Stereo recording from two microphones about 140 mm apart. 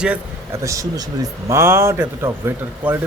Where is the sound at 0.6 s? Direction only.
25° right (ahead or behind).